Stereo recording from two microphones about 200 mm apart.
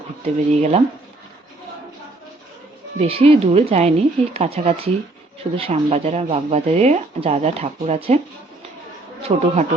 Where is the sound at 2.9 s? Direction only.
30° right (ahead or behind).